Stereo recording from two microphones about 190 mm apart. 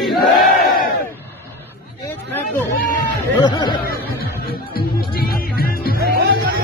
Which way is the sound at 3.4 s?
25° left (ahead or behind).